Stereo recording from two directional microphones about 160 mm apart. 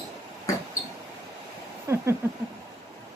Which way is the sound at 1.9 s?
15° right (ahead or behind).